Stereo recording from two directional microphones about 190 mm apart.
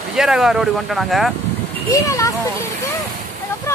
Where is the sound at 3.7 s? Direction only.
15° left (ahead or behind).